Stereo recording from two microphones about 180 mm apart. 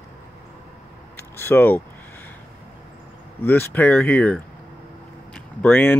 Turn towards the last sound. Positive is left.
turn(degrees=10)  # may be behind; listen again after turning